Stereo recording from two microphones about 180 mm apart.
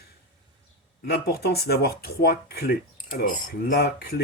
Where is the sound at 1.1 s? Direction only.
60° left (ahead or behind).